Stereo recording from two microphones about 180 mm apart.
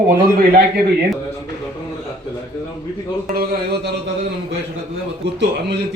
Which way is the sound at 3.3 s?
60° right (ahead or behind).